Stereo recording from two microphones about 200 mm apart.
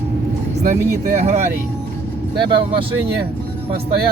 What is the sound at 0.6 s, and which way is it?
Speech, 35° right (ahead or behind).